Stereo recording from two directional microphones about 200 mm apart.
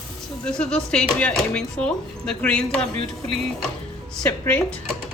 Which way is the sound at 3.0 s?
30° right (ahead or behind).